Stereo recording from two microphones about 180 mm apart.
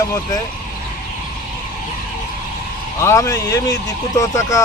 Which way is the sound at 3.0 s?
15° left (ahead or behind).